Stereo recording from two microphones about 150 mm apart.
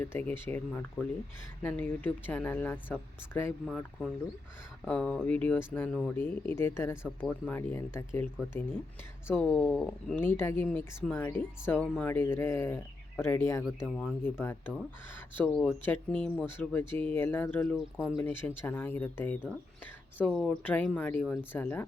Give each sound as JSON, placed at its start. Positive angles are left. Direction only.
{"t": 0.0, "sound": "speech", "side_deg": 15}
{"t": 9.3, "sound": "speech", "side_deg": 10}